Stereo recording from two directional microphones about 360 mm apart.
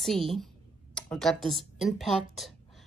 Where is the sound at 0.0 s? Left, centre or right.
Centre.